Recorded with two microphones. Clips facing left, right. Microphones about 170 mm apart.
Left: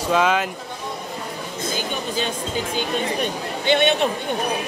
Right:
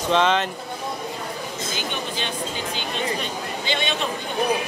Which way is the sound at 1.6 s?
45° left (ahead or behind).